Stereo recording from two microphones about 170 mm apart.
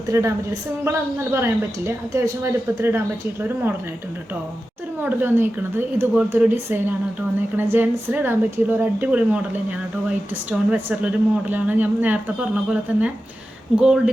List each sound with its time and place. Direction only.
0.1 s a woman's voice: 15° right (ahead or behind)
5.0 s a woman's voice: 10° right (ahead or behind)